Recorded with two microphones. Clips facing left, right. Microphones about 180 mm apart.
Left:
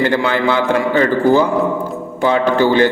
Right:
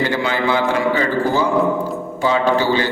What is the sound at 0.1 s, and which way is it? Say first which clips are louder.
Music: left 3 dB; 60° left (ahead or behind).